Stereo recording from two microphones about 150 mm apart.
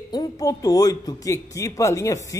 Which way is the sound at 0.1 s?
25° left (ahead or behind).